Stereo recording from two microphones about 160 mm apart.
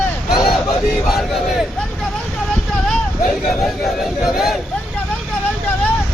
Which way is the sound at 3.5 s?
Centre (ahead or behind).